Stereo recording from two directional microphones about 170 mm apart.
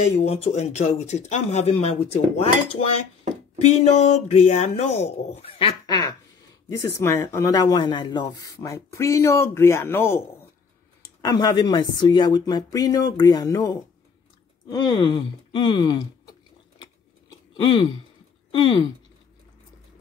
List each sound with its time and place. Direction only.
0.0 s speech: 40° left (ahead or behind)
3.6 s speech: 40° left (ahead or behind); by 16.1 s 25° left (ahead or behind)
17.3 s a sound: 25° left (ahead or behind)
18.5 s speech: 25° left (ahead or behind)